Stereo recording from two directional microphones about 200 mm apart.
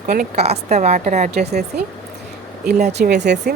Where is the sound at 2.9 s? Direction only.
50° right (ahead or behind).